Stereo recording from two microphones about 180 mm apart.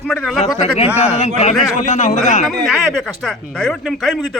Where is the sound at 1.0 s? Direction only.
40° left (ahead or behind).